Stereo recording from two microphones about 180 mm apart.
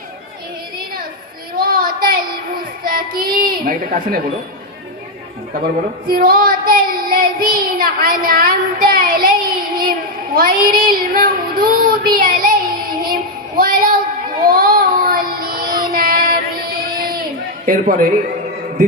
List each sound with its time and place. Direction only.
1.5 s a sound: 55° right (ahead or behind)
2.8 s a child's voice: 55° right (ahead or behind)
6.1 s child singing: 55° right (ahead or behind)
13.6 s a sound: 50° right (ahead or behind)
14.4 s child singing: 55° right (ahead or behind)
17.7 s a man's voice: 50° right (ahead or behind)